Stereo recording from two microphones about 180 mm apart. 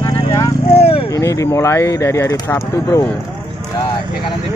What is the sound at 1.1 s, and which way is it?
Speech, 20° left (ahead or behind).